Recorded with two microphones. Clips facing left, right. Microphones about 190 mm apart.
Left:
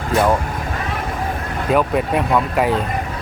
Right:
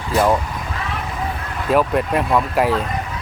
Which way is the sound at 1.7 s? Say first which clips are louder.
Even; centre (ahead or behind).